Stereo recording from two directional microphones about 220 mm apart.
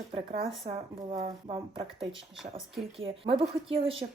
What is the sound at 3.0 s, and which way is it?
Speech, 25° right (ahead or behind).